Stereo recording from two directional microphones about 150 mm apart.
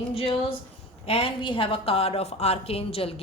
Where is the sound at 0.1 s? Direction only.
40° left (ahead or behind).